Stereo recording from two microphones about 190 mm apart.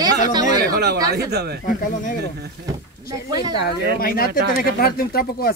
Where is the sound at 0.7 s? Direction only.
55° right (ahead or behind).